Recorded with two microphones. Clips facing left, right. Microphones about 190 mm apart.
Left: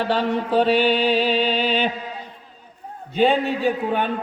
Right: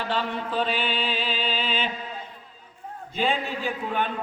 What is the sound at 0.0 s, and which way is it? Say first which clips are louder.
A man's voice: left 7 dB; 40° left (ahead or behind).